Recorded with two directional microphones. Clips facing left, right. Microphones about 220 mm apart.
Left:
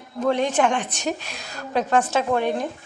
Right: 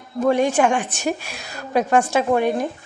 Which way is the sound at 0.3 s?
10° right (ahead or behind).